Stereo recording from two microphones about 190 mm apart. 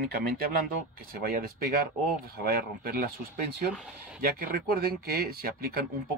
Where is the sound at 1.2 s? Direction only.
50° right (ahead or behind).